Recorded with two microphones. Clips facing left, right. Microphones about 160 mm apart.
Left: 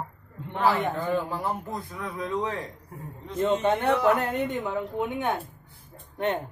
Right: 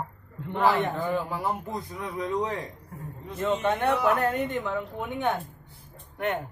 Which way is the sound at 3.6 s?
25° left (ahead or behind).